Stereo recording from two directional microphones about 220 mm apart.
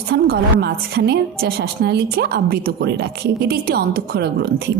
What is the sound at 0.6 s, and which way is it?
A woman's voice, 45° right (ahead or behind).